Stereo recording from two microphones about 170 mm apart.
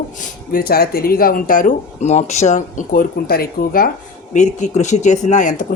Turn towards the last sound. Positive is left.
turn(degrees=50)  # may be behind; listen again after turning